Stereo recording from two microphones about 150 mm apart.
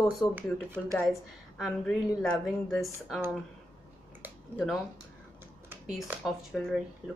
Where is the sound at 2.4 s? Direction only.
Centre (ahead or behind).